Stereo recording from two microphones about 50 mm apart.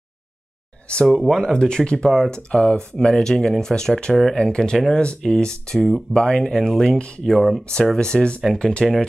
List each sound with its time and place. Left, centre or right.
1.0 s speech: centre
1.3 s speech: centre
7.2 s speech: centre
7.6 s speech: centre